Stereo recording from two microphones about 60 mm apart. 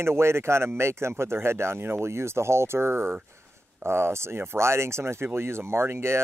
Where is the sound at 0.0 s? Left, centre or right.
Right.